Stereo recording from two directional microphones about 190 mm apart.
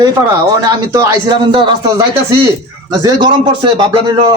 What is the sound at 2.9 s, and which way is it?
A man's voice, 20° right (ahead or behind).